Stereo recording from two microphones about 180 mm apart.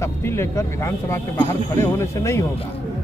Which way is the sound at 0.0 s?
15° left (ahead or behind).